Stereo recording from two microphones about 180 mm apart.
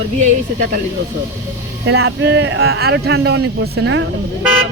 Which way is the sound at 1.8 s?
80° right.